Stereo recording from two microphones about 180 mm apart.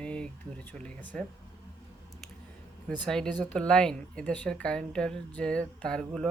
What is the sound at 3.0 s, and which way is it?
Speech, 5° left (ahead or behind).